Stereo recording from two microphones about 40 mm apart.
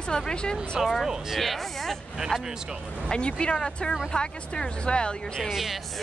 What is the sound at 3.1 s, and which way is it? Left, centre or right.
A woman's voice, left.